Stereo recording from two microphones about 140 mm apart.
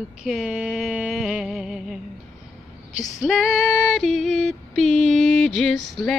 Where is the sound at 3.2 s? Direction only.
Centre (ahead or behind).